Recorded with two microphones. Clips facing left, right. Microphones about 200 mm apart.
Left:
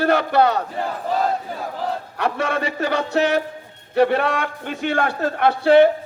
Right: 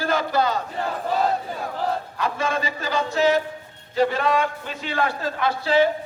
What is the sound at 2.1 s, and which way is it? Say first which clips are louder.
A man's voice: left 3 dB; 65° left (ahead or behind).